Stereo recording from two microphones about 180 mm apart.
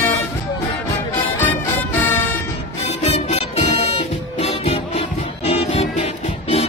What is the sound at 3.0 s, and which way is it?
Music, 35° left (ahead or behind).